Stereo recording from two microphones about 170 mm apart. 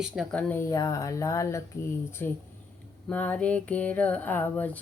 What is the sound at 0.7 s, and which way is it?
Speech, 20° left (ahead or behind).